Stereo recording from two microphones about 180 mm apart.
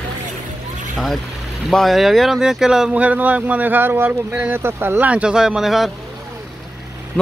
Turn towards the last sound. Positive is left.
turn(degrees=0)  # may be behind; listen again after turning